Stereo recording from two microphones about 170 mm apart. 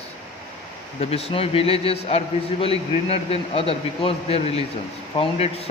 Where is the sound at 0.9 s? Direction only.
35° left (ahead or behind).